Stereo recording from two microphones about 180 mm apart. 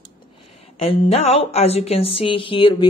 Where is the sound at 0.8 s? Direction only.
35° left (ahead or behind).